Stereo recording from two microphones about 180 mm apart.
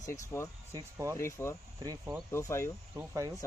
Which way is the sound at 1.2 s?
15° left (ahead or behind).